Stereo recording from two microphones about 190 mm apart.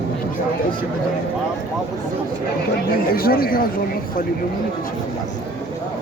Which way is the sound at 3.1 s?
50° left (ahead or behind).